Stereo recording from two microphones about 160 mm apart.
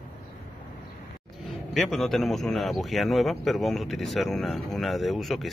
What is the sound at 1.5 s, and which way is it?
A man's voice, centre (ahead or behind).